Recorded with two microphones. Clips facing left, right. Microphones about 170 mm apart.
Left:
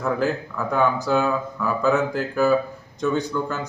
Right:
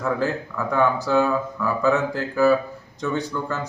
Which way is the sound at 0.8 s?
15° left (ahead or behind).